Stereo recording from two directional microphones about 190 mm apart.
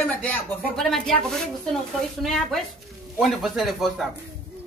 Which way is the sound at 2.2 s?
Centre (ahead or behind).